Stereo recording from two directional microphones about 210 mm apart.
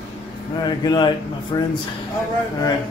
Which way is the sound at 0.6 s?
20° left (ahead or behind).